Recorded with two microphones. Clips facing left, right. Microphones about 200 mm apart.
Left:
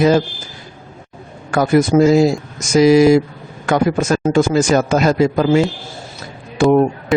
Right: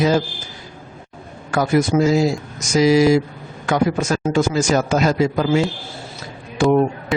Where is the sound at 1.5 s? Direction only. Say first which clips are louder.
Left 4 dB; 55° left (ahead or behind).